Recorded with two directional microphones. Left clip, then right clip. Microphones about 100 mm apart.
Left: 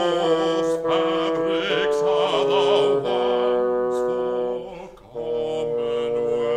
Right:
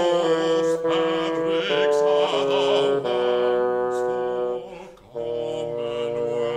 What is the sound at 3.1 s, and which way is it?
Music, 55° right (ahead or behind).